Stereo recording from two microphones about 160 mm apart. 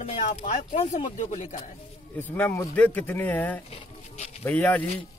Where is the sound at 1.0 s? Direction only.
50° left (ahead or behind).